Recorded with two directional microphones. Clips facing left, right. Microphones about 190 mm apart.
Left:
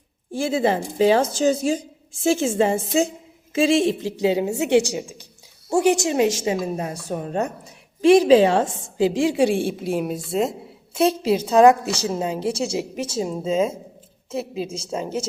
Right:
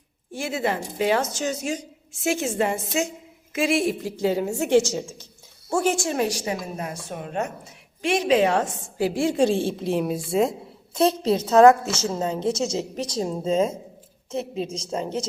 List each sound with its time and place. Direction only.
0.3 s a woman's voice: 30° left (ahead or behind); by 15.3 s 10° left (ahead or behind)